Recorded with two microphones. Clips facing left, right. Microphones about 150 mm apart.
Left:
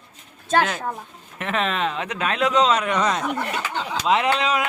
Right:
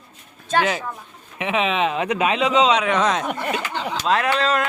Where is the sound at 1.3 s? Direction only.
5° right (ahead or behind).